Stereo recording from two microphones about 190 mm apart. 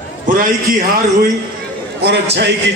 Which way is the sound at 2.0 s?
65° right (ahead or behind).